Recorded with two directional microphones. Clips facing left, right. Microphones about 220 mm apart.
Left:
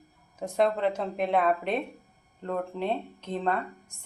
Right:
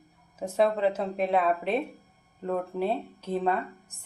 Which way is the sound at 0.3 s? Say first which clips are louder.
Right 1 dB; 5° right (ahead or behind).